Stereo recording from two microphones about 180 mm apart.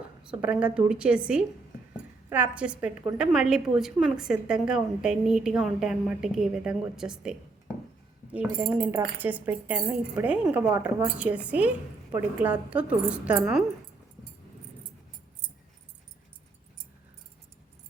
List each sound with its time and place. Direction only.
0.2 s a woman's voice: 5° right (ahead or behind)